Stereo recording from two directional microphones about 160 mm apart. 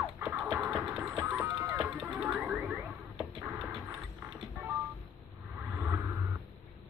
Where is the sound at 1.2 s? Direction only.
15° right (ahead or behind).